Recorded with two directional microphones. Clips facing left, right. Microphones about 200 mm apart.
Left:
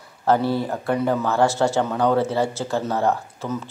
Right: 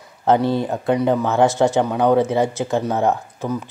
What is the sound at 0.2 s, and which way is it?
Speech, 20° right (ahead or behind).